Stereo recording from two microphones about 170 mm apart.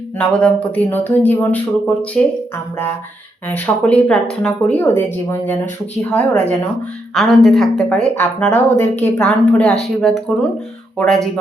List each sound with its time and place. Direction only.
0.2 s speech: 5° left (ahead or behind)
3.8 s speech: 5° left (ahead or behind)